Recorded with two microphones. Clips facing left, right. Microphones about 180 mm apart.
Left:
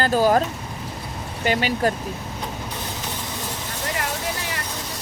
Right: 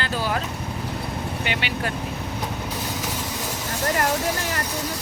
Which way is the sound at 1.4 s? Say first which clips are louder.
Left 10 dB; 40° left (ahead or behind).